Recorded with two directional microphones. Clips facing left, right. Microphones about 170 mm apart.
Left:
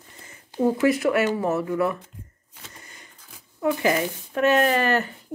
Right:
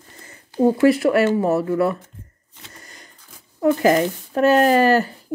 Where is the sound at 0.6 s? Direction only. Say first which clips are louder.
Right 5 dB; 30° right (ahead or behind).